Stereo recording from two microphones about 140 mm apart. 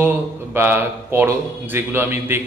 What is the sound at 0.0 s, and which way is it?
A man's voice, 15° right (ahead or behind).